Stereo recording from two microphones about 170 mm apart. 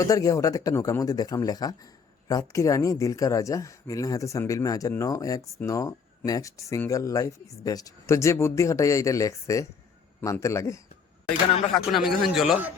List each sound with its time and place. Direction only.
0.0 s a man's voice: 20° left (ahead or behind)
11.7 s speech: centre (ahead or behind)